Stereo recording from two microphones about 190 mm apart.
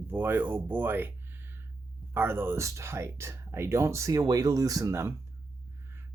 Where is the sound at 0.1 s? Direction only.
10° right (ahead or behind).